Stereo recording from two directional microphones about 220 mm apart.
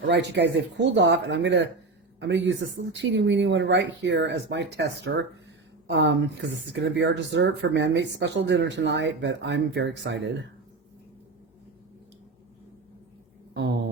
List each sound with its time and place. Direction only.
0.1 s speech: 50° right (ahead or behind)
5.9 s a woman's voice: 55° right (ahead or behind)
13.5 s speech: 50° right (ahead or behind)